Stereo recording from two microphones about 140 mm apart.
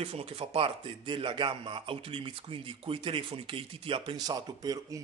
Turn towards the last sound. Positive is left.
turn(degrees=-25)  # may be behind; listen again after turning